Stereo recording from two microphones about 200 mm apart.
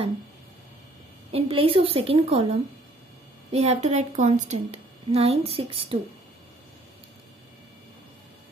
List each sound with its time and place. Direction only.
1.3 s a woman's voice: 25° right (ahead or behind)